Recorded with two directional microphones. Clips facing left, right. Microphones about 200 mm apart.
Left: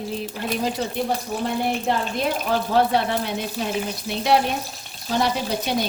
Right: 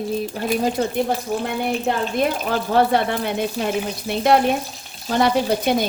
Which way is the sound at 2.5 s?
55° right (ahead or behind).